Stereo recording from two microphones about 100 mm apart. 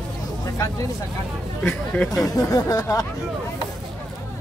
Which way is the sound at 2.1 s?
40° left (ahead or behind).